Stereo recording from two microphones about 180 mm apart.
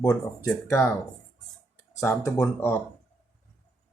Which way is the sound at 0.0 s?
15° left (ahead or behind).